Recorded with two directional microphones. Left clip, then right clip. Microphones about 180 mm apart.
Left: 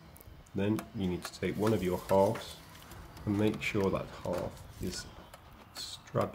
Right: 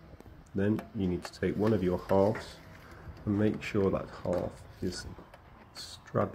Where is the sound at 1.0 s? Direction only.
10° right (ahead or behind).